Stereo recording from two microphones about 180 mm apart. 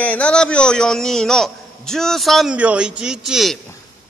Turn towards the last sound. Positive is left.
turn(degrees=0)  # may be behind; listen again after turning